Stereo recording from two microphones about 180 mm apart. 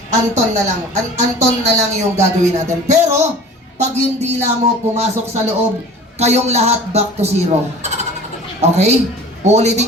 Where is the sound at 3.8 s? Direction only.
40° right (ahead or behind).